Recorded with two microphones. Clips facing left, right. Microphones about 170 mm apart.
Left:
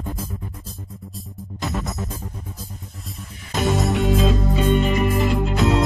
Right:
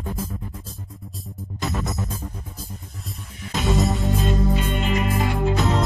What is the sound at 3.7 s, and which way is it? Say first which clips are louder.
Music: even; centre (ahead or behind).